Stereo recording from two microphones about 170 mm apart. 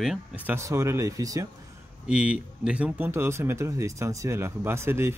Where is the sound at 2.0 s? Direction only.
5° right (ahead or behind).